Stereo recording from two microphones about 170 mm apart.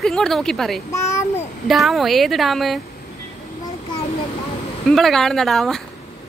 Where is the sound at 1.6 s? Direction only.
Centre (ahead or behind).